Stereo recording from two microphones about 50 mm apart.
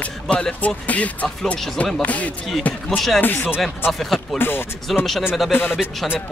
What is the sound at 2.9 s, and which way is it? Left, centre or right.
Speech, centre.